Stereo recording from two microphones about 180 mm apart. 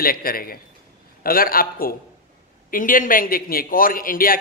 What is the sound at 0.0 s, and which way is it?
A man's voice, 55° left (ahead or behind).